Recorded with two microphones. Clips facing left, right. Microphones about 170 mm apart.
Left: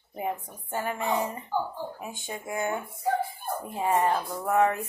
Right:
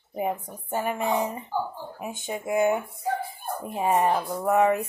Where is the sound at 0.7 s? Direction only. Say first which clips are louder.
Right 3 dB; 20° right (ahead or behind).